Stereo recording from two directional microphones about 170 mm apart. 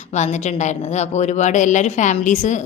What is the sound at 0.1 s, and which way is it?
A woman's voice, 45° left (ahead or behind).